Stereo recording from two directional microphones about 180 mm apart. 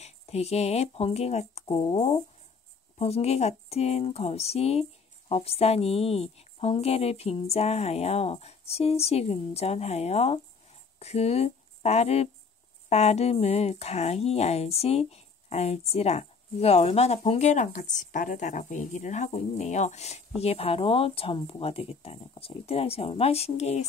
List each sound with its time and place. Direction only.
0.0 s speech: 35° left (ahead or behind)